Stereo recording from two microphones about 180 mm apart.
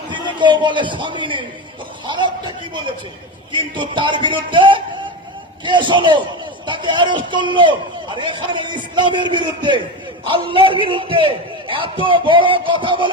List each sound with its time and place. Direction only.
0.3 s a man's voice: 25° right (ahead or behind)